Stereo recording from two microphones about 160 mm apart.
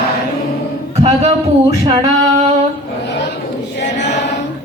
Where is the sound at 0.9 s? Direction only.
40° right (ahead or behind).